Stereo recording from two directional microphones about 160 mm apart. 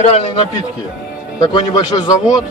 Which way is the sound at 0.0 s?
40° left (ahead or behind).